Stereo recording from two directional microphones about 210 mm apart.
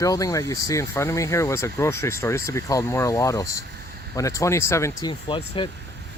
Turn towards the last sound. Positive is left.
turn(degrees=25)  # may be behind; listen again after turning